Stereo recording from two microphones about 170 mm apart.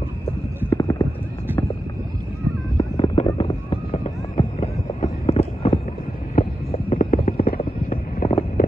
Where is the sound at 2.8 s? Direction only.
35° left (ahead or behind).